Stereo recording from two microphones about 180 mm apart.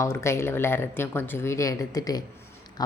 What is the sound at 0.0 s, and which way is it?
Speech, 15° left (ahead or behind).